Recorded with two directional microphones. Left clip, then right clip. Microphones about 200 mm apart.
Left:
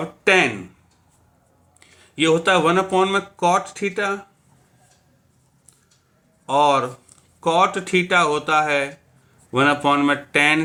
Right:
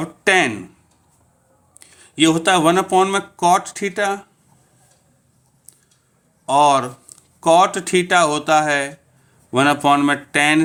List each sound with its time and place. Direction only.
0.0 s speech: 45° right (ahead or behind)
1.8 s speech: 40° right (ahead or behind)
6.4 s speech: 45° right (ahead or behind)